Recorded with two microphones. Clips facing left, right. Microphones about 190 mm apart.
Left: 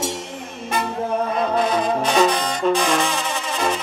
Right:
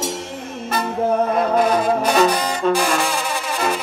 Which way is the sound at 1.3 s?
5° right (ahead or behind).